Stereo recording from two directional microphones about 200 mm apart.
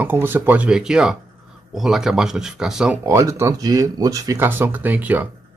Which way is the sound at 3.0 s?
15° right (ahead or behind).